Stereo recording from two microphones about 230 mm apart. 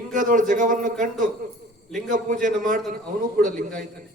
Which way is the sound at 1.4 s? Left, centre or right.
Right.